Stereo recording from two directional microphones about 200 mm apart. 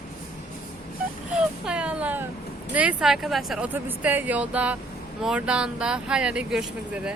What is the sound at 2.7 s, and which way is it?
Speech, 5° right (ahead or behind).